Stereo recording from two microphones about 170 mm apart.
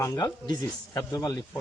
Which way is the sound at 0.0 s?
20° left (ahead or behind).